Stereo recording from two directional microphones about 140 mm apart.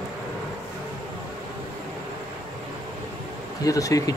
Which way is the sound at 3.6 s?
25° left (ahead or behind).